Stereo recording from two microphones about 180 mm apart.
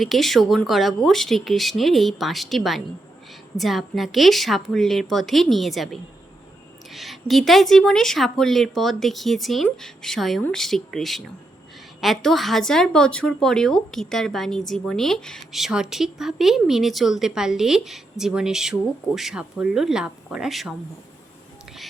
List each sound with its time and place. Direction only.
0.0 s speech: centre (ahead or behind)